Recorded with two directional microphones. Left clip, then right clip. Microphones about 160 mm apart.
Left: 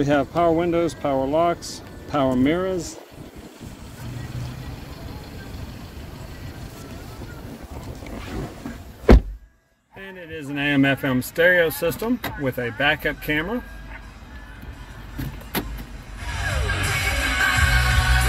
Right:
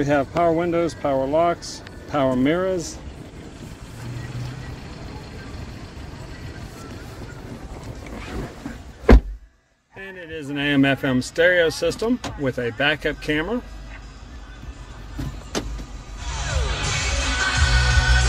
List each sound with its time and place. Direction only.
0.0 s speech: 20° left (ahead or behind); by 3.0 s centre (ahead or behind)
9.9 s a sound: centre (ahead or behind)
12.0 s speech: 10° left (ahead or behind)
16.3 s music: 50° right (ahead or behind)